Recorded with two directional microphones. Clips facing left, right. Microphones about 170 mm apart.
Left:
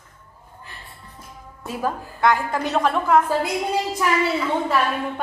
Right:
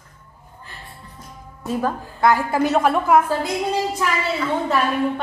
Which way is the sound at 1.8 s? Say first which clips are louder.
Right 1 dB; 5° left (ahead or behind).